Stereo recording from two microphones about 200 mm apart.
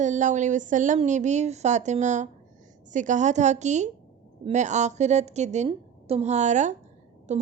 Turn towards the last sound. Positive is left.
turn(degrees=-35)  # may be behind; listen again after turning